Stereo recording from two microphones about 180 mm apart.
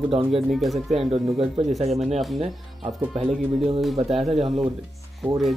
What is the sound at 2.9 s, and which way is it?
Speech, centre (ahead or behind).